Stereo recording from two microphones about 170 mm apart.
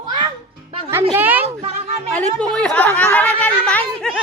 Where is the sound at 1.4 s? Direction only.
35° right (ahead or behind).